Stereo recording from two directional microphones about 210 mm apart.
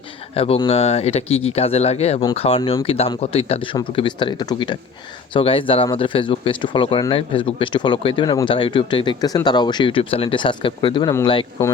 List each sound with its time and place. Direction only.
0.3 s speech: 25° left (ahead or behind)